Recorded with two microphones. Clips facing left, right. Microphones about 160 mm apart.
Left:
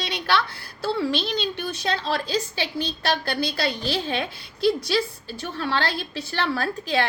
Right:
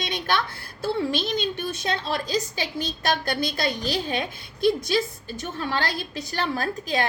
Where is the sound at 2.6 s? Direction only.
45° right (ahead or behind).